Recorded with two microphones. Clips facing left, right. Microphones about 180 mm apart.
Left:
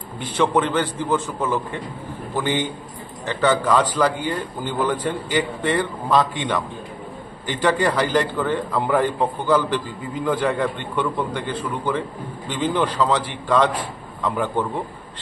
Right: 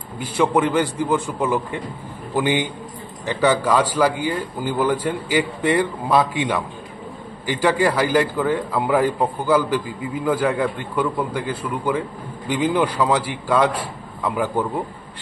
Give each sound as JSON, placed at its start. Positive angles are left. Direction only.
{"t": 0.2, "sound": "a man's voice", "side_deg": -10}